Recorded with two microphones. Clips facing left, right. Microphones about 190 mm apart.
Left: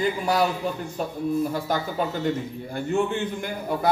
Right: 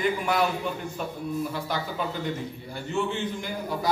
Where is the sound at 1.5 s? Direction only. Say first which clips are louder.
Left 4 dB; 45° left (ahead or behind).